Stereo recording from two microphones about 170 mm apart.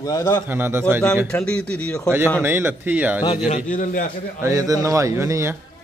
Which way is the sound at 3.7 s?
50° left (ahead or behind).